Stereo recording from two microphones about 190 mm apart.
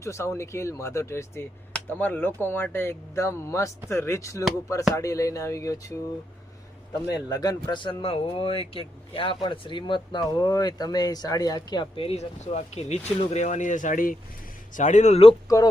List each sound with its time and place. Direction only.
0.0 s speech: 15° left (ahead or behind)
7.1 s speech: 20° left (ahead or behind)
15.4 s speech: 15° left (ahead or behind)